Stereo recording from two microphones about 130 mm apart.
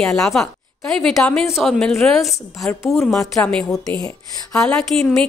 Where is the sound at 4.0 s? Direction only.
25° left (ahead or behind).